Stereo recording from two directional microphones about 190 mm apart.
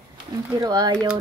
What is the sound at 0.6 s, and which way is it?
Speech, 20° right (ahead or behind).